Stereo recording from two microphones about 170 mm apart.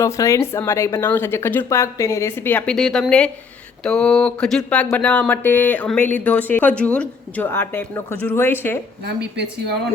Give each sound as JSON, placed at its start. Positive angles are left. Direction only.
{"t": 0.0, "sound": "speech", "side_deg": 15}
{"t": 9.0, "sound": "speech", "side_deg": -90}